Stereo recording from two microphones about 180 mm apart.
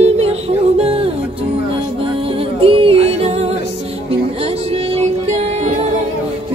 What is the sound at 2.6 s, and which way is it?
Music, 30° right (ahead or behind).